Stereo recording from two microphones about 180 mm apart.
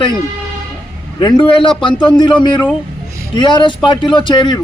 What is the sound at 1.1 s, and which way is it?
Speech, 25° left (ahead or behind).